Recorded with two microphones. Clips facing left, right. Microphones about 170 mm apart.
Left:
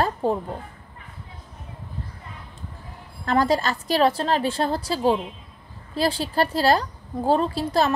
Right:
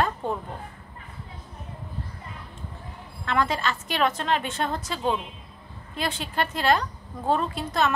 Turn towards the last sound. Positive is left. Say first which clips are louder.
# left 4 dB
turn(degrees=35)  # may be behind; listen again after turning